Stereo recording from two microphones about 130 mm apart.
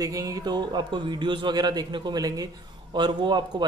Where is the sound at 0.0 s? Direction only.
25° right (ahead or behind).